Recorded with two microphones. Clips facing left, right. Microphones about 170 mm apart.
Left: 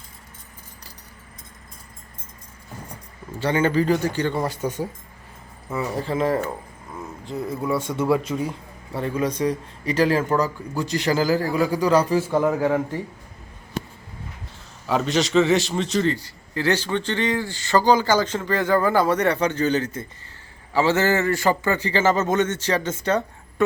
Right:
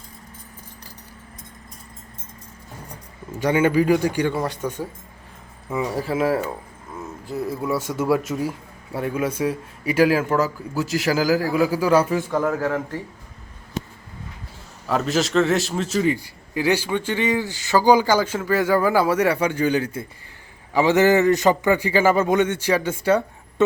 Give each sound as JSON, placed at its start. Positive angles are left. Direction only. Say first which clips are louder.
{"t": 3.4, "sound": "a man's voice", "louder": "right 2 dB", "side_deg": -10}
{"t": 5.7, "sound": "a man's voice", "louder": "right 1 dB", "side_deg": -10}
{"t": 12.3, "sound": "a man's voice", "louder": "left 2 dB", "side_deg": 10}
{"t": 14.8, "sound": "a man's voice", "louder": "even", "side_deg": 0}
{"t": 23.6, "sound": "speech", "louder": "right 2 dB", "side_deg": -25}